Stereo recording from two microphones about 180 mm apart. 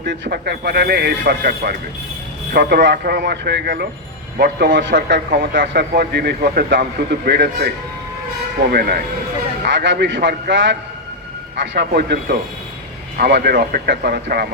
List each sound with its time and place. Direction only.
0.0 s a man's voice: 70° right (ahead or behind)
8.7 s a man's voice: 60° right (ahead or behind)
9.6 s a man's voice: 80° right
11.9 s a man's voice: 60° right (ahead or behind)